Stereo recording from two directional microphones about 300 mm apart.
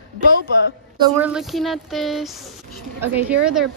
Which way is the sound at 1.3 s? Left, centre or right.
Centre.